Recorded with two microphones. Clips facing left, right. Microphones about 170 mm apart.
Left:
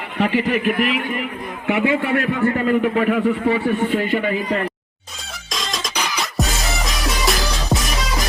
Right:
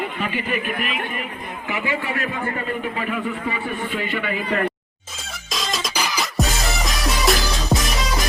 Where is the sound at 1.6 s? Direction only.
65° left (ahead or behind).